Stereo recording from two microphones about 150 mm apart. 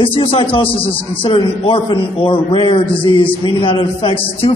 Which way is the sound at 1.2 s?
35° left (ahead or behind).